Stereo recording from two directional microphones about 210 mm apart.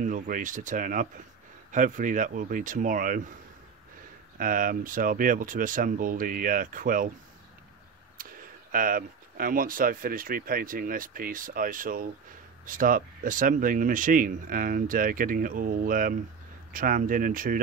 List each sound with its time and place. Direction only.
0.0 s speech: 40° right (ahead or behind)
4.4 s speech: 40° right (ahead or behind)
8.2 s speech: 40° right (ahead or behind)